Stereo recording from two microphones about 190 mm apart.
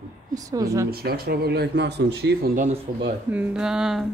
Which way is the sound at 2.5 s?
40° right (ahead or behind).